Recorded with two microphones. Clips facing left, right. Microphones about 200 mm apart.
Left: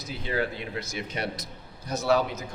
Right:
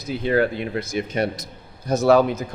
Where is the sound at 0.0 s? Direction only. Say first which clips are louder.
Right 9 dB; 55° right (ahead or behind).